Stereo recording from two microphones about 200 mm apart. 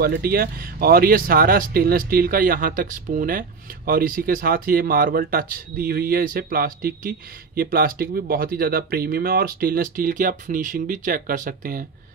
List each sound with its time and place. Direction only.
0.0 s speech: 50° right (ahead or behind)